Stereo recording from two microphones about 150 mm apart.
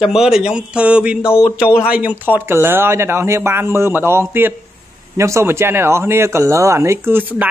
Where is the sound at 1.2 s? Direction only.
15° left (ahead or behind).